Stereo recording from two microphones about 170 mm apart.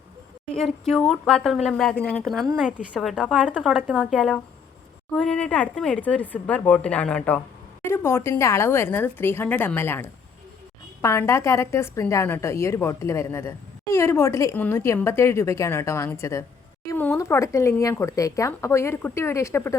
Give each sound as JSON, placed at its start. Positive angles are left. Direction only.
{"t": 0.4, "sound": "a woman's voice", "side_deg": 5}